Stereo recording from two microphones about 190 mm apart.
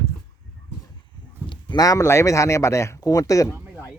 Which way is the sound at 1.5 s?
20° left (ahead or behind).